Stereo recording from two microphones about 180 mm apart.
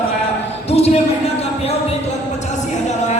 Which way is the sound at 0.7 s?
35° left (ahead or behind).